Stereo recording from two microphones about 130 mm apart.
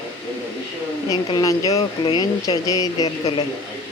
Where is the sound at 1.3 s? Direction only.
25° left (ahead or behind).